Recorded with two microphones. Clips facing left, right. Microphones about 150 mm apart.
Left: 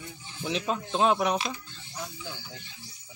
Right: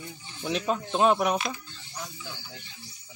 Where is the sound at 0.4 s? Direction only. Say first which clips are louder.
Right 2 dB; centre (ahead or behind).